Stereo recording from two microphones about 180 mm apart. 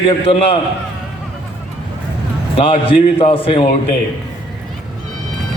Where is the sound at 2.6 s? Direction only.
30° left (ahead or behind).